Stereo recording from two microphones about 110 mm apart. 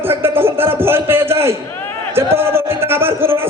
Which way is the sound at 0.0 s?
20° right (ahead or behind).